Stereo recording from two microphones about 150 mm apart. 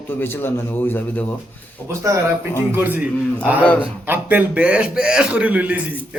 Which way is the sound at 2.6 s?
15° right (ahead or behind).